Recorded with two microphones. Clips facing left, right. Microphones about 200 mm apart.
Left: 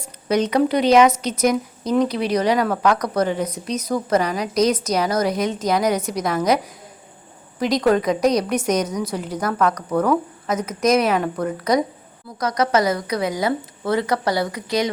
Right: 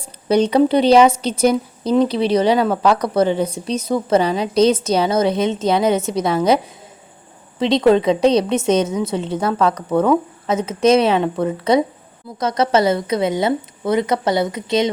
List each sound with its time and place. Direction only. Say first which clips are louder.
0.0 s speech: right 4 dB; 30° right (ahead or behind)
7.6 s speech: right 4 dB; 25° right (ahead or behind)